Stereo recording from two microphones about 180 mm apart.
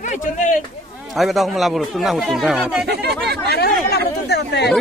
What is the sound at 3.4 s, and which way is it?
Speech, 65° left (ahead or behind).